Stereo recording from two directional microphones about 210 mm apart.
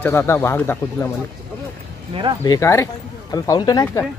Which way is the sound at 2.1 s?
25° right (ahead or behind).